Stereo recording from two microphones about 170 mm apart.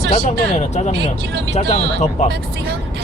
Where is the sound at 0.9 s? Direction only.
70° right (ahead or behind).